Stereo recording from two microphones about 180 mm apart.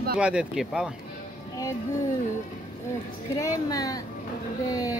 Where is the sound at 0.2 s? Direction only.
5° right (ahead or behind).